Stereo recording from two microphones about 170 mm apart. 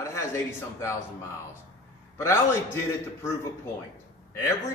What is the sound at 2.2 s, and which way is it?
Speech, 15° left (ahead or behind).